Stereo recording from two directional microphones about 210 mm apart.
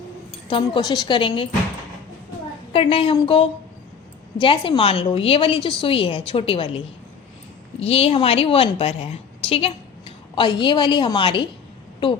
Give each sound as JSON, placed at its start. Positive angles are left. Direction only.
{"t": 0.4, "sound": "a woman's voice", "side_deg": 25}
{"t": 2.7, "sound": "a woman's voice", "side_deg": 25}